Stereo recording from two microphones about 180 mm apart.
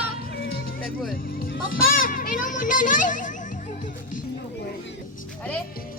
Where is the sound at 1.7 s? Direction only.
50° left (ahead or behind).